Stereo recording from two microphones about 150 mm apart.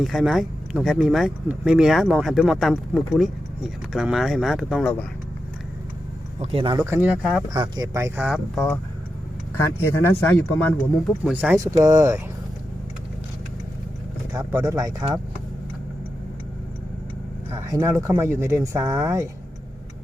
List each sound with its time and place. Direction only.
0.0 s speech: centre (ahead or behind)
6.4 s speech: 40° right (ahead or behind)
6.9 s speech: 10° right (ahead or behind)
7.5 s speech: 25° right (ahead or behind)
8.5 s speech: 5° left (ahead or behind)
9.6 s speech: 15° left (ahead or behind)
11.2 s speech: 10° right (ahead or behind)
14.3 s speech: 20° right (ahead or behind)
17.5 s a sound: 20° right (ahead or behind)
17.8 s speech: 20° right (ahead or behind)